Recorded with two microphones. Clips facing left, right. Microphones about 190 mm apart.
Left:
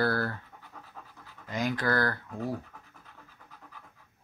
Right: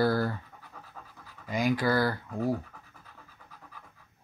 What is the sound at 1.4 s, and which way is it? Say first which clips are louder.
Speech: right 3 dB; 10° right (ahead or behind).